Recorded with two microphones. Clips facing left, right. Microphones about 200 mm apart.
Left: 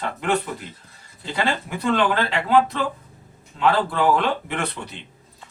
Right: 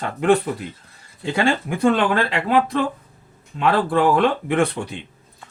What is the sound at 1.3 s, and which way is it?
Speech, 50° right (ahead or behind).